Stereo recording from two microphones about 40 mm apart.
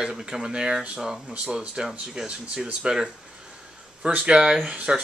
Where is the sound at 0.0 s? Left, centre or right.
Centre.